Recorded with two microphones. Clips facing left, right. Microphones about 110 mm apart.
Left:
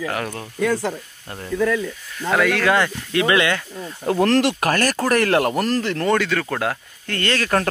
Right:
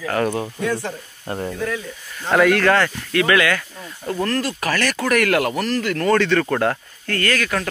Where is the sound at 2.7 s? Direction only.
20° left (ahead or behind).